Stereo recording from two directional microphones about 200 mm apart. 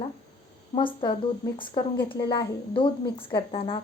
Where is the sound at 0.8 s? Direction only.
25° left (ahead or behind).